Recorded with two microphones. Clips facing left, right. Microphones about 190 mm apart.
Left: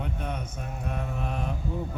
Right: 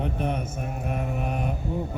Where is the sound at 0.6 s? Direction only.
20° right (ahead or behind).